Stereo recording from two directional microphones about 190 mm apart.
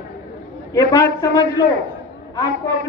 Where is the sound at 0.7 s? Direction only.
15° left (ahead or behind).